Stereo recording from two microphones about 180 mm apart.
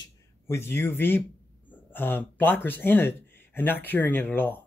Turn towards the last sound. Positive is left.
turn(degrees=10)  # may be behind; listen again after turning